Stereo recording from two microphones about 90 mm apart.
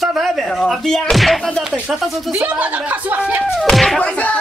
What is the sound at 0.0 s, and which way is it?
Speech, centre (ahead or behind).